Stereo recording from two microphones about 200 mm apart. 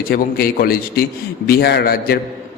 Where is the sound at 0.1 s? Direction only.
50° left (ahead or behind).